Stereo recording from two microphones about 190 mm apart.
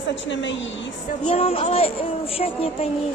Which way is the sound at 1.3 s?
30° left (ahead or behind).